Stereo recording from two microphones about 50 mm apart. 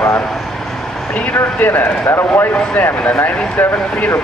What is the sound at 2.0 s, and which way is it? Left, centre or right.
Speech, left.